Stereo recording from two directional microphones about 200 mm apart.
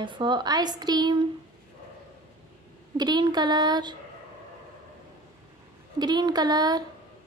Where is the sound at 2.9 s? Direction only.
20° right (ahead or behind).